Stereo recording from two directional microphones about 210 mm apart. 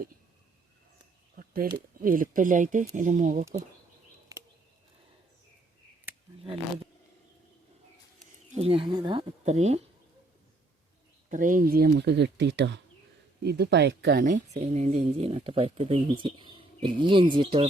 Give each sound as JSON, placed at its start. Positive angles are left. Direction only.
{"t": 1.4, "sound": "speech", "side_deg": -40}
{"t": 8.4, "sound": "speech", "side_deg": -30}
{"t": 11.3, "sound": "speech", "side_deg": -40}
{"t": 14.3, "sound": "speech", "side_deg": -35}